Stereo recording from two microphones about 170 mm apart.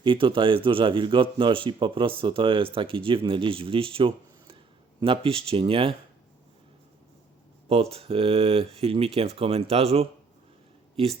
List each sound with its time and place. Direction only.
0.0 s a man's voice: 30° right (ahead or behind)
7.7 s speech: 35° right (ahead or behind)